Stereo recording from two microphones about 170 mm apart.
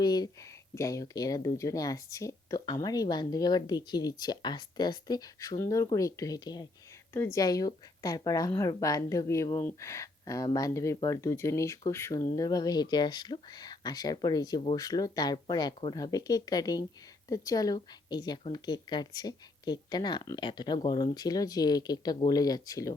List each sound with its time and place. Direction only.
0.0 s speech: 25° left (ahead or behind)